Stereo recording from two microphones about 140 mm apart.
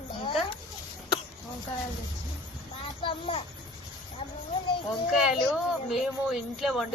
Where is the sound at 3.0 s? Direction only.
40° left (ahead or behind).